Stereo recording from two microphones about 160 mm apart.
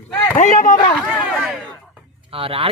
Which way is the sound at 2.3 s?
35° right (ahead or behind).